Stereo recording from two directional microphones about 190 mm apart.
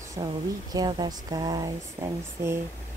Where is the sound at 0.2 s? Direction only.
20° right (ahead or behind).